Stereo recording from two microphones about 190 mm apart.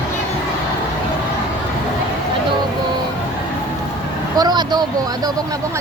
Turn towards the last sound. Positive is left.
turn(degrees=-20)  # may be behind; listen again after turning